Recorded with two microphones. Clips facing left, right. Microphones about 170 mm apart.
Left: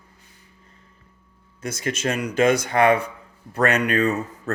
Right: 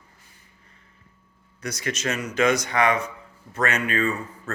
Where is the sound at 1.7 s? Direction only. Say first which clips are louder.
Left 3 dB; 50° left (ahead or behind).